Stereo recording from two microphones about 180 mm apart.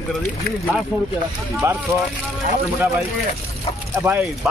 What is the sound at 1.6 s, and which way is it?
Speech, 15° right (ahead or behind).